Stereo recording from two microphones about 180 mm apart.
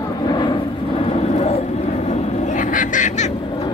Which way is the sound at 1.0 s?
35° left (ahead or behind).